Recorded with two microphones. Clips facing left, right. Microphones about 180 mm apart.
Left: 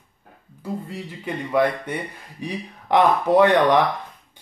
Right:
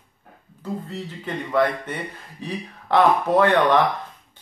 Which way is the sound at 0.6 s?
10° left (ahead or behind).